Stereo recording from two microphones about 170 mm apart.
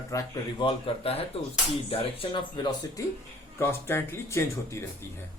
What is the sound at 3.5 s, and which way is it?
Speech, 15° left (ahead or behind).